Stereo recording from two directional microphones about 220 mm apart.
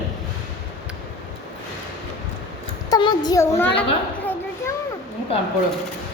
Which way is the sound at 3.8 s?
10° left (ahead or behind).